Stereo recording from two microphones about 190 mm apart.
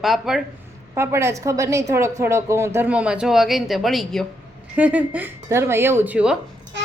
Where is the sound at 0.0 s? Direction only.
Centre (ahead or behind).